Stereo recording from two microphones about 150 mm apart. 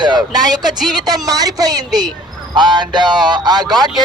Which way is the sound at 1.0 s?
25° right (ahead or behind).